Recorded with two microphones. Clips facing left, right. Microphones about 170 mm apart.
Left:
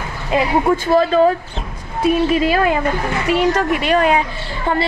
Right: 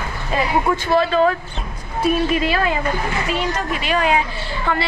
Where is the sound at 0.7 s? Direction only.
40° left (ahead or behind).